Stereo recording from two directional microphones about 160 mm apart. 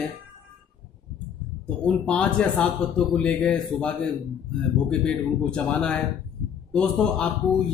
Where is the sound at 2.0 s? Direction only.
5° left (ahead or behind).